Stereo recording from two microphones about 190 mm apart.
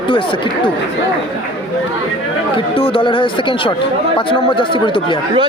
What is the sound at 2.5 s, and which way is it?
Speech, 30° left (ahead or behind).